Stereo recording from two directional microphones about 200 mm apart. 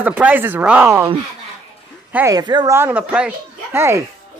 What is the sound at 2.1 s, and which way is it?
Speech, 15° right (ahead or behind).